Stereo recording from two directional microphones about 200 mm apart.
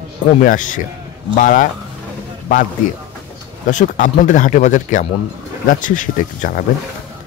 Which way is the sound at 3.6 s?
40° left (ahead or behind).